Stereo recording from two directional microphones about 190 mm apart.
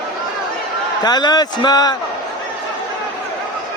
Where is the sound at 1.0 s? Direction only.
20° left (ahead or behind).